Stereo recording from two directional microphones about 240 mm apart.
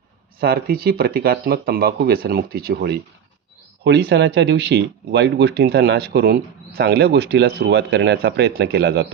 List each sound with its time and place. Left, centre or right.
0.3 s speech: right